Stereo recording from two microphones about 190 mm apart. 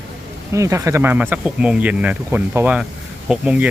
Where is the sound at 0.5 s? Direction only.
15° right (ahead or behind).